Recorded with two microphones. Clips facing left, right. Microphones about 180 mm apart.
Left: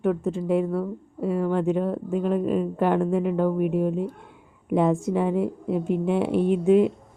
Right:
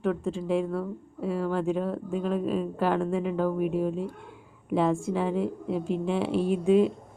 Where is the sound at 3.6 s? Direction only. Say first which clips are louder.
Left 3 dB; 65° left (ahead or behind).